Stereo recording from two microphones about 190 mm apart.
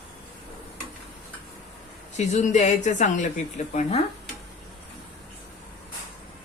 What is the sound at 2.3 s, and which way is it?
A woman's voice, 40° left (ahead or behind).